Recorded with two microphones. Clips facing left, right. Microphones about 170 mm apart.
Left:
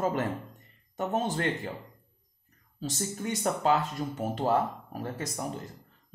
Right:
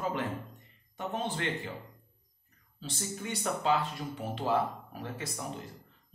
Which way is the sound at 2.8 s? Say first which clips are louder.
Left 5 dB; 45° left (ahead or behind).